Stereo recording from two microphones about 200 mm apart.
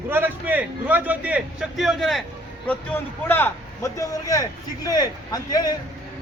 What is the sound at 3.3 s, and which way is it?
A man's voice, 10° left (ahead or behind).